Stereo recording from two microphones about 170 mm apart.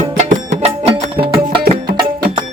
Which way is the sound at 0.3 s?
35° right (ahead or behind).